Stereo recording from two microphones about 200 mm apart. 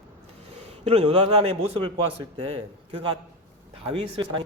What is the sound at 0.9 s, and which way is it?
A man's voice, 30° right (ahead or behind).